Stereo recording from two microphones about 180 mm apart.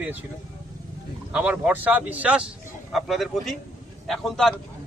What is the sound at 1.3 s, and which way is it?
A man's voice, 10° right (ahead or behind).